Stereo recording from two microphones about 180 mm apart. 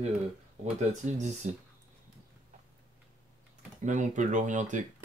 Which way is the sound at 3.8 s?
45° right (ahead or behind).